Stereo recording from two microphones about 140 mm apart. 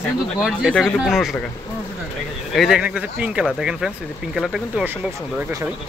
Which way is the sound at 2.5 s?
5° right (ahead or behind).